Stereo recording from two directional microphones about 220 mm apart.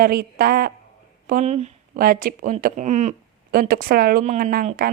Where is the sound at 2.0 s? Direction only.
40° right (ahead or behind).